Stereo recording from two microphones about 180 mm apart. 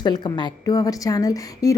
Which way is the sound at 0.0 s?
25° left (ahead or behind).